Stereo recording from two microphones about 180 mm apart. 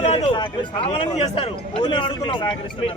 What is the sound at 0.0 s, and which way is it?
Speech, 35° left (ahead or behind).